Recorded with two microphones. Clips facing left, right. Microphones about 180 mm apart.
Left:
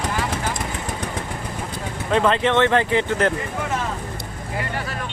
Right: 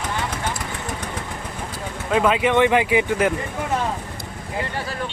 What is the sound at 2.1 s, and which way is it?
Speech, 5° right (ahead or behind).